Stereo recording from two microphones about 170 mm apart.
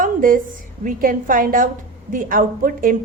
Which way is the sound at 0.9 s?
55° right (ahead or behind).